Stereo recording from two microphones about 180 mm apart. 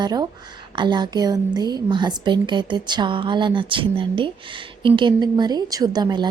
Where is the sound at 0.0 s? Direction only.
20° right (ahead or behind).